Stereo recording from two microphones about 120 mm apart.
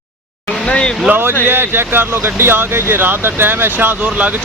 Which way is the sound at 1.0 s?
15° right (ahead or behind).